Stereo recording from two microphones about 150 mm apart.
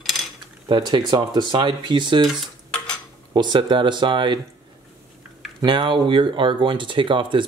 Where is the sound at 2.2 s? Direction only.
Centre (ahead or behind).